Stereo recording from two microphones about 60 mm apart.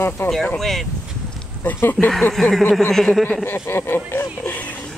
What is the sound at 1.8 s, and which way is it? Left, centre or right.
Speech, left.